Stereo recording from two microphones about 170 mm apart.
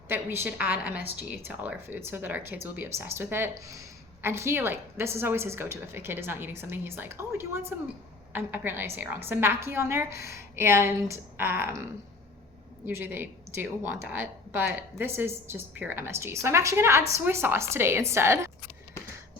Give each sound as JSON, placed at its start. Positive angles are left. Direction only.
{"t": 0.1, "sound": "speech", "side_deg": -15}
{"t": 12.8, "sound": "speech", "side_deg": -10}